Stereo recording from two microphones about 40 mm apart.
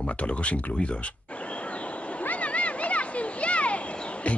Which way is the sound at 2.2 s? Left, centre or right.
Left.